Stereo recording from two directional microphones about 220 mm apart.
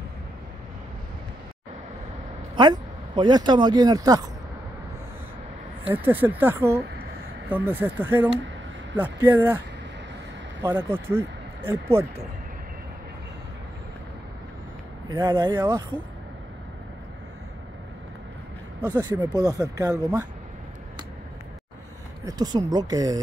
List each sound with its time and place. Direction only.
2.5 s speech: 20° right (ahead or behind)
6.0 s speech: 10° right (ahead or behind)
10.6 s speech: 10° right (ahead or behind)
15.0 s speech: 20° right (ahead or behind)
18.9 s speech: 20° right (ahead or behind)
22.2 s speech: 15° right (ahead or behind)